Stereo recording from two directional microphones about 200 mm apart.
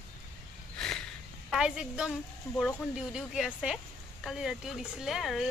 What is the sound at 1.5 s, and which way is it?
Speech, 5° right (ahead or behind).